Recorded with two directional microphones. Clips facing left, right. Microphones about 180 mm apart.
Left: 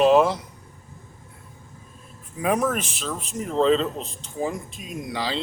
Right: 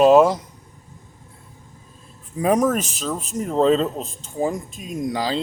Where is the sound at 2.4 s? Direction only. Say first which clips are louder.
Right 5 dB; 40° right (ahead or behind).